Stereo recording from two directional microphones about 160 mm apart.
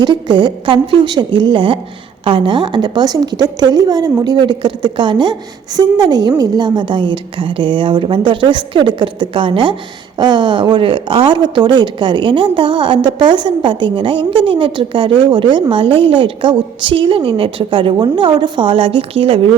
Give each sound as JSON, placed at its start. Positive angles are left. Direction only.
{"t": 0.0, "sound": "a woman's voice", "side_deg": -30}